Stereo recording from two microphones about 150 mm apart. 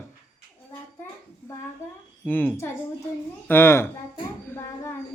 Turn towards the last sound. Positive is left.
turn(degrees=15)  # may be behind; listen again after turning